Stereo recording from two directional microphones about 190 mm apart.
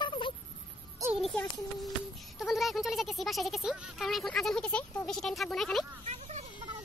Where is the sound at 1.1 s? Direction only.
Centre (ahead or behind).